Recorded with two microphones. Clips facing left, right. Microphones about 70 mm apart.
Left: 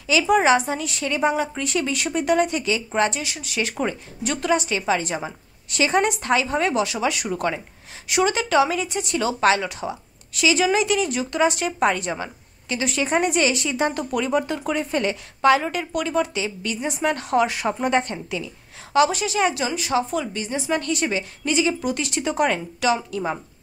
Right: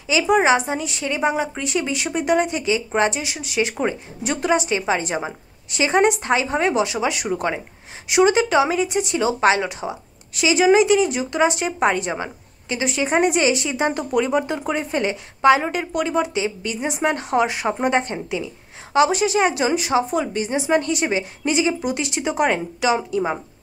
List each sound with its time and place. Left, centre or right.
0.0 s speech: centre